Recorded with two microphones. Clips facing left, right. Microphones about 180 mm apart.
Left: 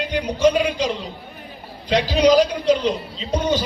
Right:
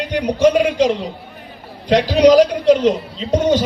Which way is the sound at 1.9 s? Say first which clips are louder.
Right 5 dB; 75° right (ahead or behind).